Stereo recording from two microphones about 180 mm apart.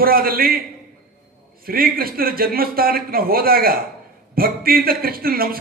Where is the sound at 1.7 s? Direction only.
55° right (ahead or behind).